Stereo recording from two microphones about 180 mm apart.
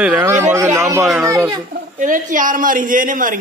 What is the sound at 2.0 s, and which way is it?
Speech, 45° right (ahead or behind).